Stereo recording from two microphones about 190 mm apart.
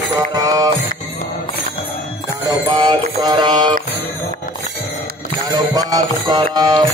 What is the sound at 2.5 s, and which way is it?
Music, 20° right (ahead or behind).